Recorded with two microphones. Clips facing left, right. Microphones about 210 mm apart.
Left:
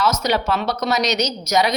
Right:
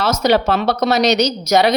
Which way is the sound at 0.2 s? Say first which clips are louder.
Right 6 dB; 65° right (ahead or behind).